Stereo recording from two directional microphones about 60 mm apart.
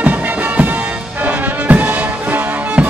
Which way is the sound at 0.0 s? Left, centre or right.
Right.